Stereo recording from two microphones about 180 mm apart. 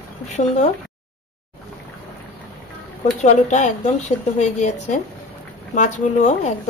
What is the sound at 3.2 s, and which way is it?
A woman's voice, 40° left (ahead or behind).